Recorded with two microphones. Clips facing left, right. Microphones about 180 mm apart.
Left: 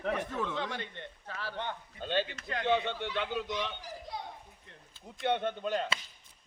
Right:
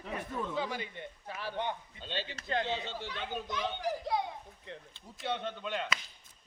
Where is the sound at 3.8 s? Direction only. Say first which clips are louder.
Right 9 dB; 80° right.